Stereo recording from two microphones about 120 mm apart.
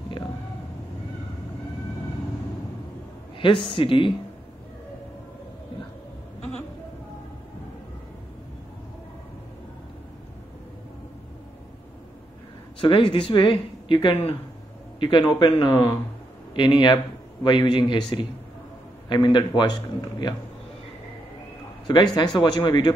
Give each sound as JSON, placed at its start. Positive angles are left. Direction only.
{"t": 3.7, "sound": "speech", "side_deg": 45}
{"t": 12.8, "sound": "speech", "side_deg": 45}
{"t": 19.0, "sound": "a man's voice", "side_deg": 40}
{"t": 21.8, "sound": "a man's voice", "side_deg": 35}